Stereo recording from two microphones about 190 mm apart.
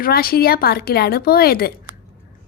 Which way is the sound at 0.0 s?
50° left (ahead or behind).